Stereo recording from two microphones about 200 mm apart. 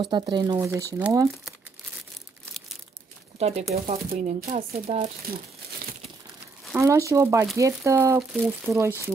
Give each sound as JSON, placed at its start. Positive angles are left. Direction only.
{"t": 0.0, "sound": "speech", "side_deg": -20}
{"t": 3.3, "sound": "speech", "side_deg": -30}
{"t": 4.1, "sound": "speech", "side_deg": -40}
{"t": 6.7, "sound": "speech", "side_deg": -15}
{"t": 8.2, "sound": "speech", "side_deg": 0}
{"t": 8.7, "sound": "speech", "side_deg": -15}